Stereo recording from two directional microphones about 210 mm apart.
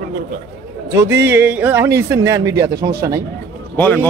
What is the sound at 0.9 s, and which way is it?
Speech, 10° right (ahead or behind).